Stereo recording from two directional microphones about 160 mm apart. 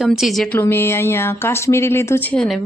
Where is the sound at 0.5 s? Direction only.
15° left (ahead or behind).